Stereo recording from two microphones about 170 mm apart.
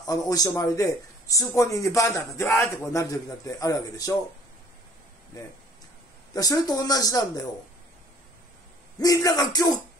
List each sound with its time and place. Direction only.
0.0 s a man's voice: 20° left (ahead or behind)
6.3 s a man's voice: 20° left (ahead or behind)
9.0 s a man's voice: 20° left (ahead or behind)